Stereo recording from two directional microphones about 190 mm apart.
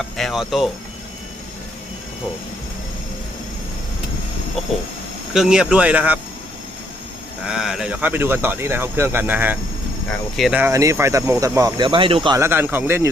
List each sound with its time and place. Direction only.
0.0 s speech: centre (ahead or behind)
5.3 s speech: 5° right (ahead or behind)
7.4 s speech: 5° right (ahead or behind)
10.6 s speech: 15° right (ahead or behind)
12.4 s speech: 10° right (ahead or behind)